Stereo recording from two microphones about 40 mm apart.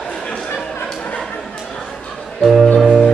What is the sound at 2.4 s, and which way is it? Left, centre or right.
Music, centre.